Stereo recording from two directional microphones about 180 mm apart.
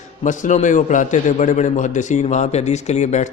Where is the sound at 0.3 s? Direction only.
45° left (ahead or behind).